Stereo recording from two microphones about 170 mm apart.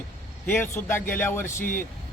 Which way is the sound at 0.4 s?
10° left (ahead or behind).